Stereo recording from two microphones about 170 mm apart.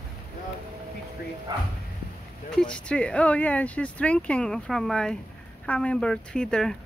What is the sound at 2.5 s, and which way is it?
Speech, 5° left (ahead or behind).